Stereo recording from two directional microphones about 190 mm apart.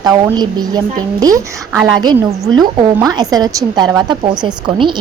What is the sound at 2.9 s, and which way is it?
A woman's voice, 20° right (ahead or behind).